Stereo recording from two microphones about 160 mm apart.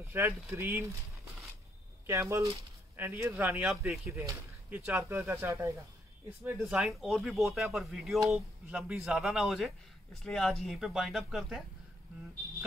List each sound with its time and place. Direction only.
0.0 s speech: 15° right (ahead or behind)
2.0 s speech: 15° right (ahead or behind)
4.1 s speech: 20° right (ahead or behind); by 11.6 s centre (ahead or behind)